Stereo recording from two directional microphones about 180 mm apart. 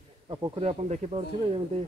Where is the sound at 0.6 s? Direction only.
35° right (ahead or behind).